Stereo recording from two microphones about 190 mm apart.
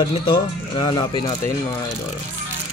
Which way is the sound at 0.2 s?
25° left (ahead or behind).